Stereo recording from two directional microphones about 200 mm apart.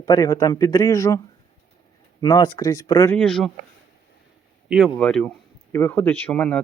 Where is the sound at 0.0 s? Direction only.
20° left (ahead or behind).